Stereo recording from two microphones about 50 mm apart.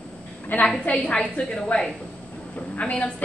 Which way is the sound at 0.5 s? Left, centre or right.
Left.